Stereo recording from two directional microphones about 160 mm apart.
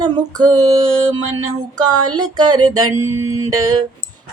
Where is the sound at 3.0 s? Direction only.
15° right (ahead or behind).